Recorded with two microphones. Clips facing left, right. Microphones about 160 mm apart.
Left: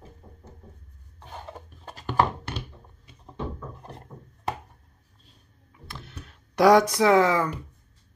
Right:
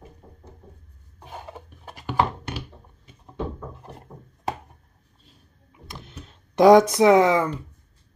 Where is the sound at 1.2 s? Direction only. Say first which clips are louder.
Right 2 dB; 10° right (ahead or behind).